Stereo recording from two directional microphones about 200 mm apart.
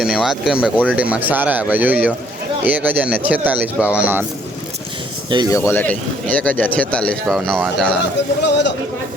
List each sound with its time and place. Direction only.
0.0 s speech: centre (ahead or behind)
5.5 s speech: 15° left (ahead or behind)
8.4 s a man's voice: 60° left (ahead or behind)